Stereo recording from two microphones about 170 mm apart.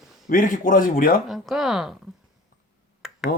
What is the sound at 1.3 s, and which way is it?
Speech, centre (ahead or behind).